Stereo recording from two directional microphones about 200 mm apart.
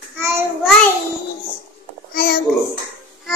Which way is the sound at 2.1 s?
50° left (ahead or behind).